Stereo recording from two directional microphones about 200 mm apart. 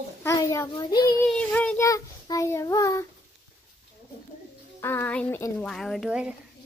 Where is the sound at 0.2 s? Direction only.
15° left (ahead or behind).